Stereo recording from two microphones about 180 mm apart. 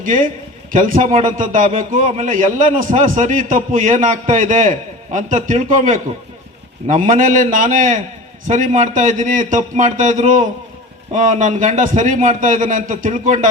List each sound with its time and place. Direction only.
0.0 s a man's voice: 45° right (ahead or behind)